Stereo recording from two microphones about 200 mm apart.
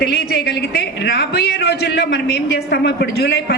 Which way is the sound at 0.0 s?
50° left (ahead or behind).